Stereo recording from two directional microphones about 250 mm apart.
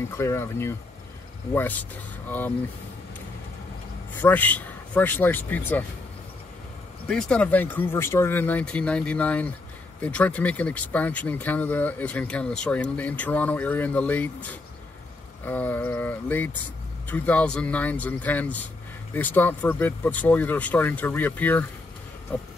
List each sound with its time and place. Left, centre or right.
0.2 s speech: centre
4.2 s speech: centre
7.1 s speech: centre